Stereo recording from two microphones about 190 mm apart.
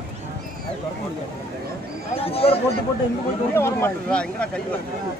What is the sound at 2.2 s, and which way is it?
Speech, 30° left (ahead or behind).